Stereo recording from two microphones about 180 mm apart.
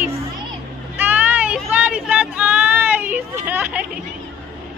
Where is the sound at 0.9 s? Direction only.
10° right (ahead or behind).